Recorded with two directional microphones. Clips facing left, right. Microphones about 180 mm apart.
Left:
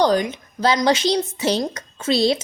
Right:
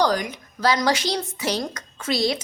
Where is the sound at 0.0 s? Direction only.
25° left (ahead or behind).